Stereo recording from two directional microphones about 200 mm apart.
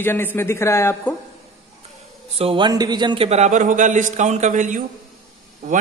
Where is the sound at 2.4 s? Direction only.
25° right (ahead or behind).